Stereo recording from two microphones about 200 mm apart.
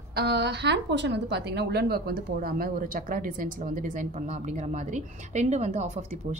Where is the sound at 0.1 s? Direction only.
55° right (ahead or behind).